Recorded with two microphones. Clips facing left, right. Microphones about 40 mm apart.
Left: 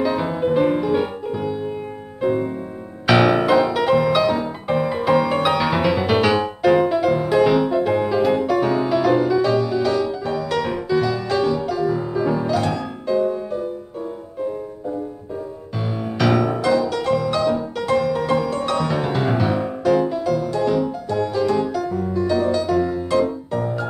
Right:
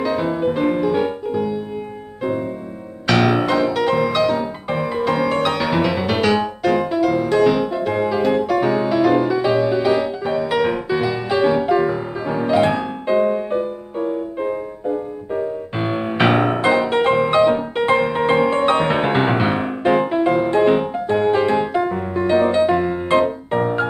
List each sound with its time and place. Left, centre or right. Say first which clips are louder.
0.0 s music: right 1 dB; centre
3.1 s music: left 1 dB; centre; by 23.9 s right